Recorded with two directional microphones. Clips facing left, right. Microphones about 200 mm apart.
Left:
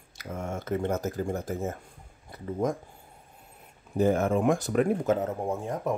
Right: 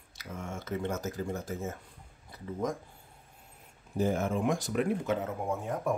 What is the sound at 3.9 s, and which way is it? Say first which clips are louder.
Speech: left 6 dB; 60° left (ahead or behind).